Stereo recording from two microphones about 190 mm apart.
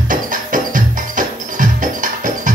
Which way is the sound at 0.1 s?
45° right (ahead or behind).